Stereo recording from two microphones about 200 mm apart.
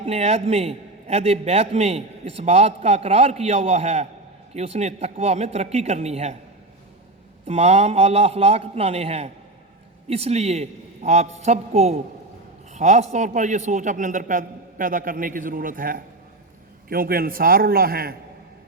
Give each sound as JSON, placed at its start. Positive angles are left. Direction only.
{"t": 0.0, "sound": "a man's voice", "side_deg": -30}
{"t": 7.4, "sound": "a man's voice", "side_deg": -30}